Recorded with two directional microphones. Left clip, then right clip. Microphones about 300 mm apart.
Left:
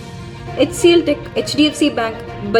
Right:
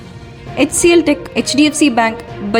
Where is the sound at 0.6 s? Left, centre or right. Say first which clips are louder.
Right 1 dB; right.